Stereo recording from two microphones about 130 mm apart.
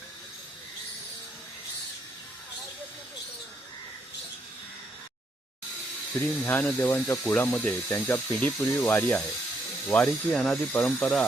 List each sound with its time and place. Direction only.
6.4 s speech: 15° left (ahead or behind)